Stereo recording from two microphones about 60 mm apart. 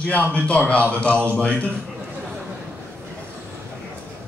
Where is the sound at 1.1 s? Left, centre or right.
Right.